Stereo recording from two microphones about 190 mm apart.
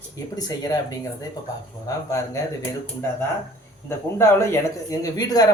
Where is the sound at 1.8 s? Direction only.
15° left (ahead or behind).